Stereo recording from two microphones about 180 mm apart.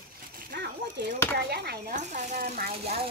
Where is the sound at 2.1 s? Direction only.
45° right (ahead or behind).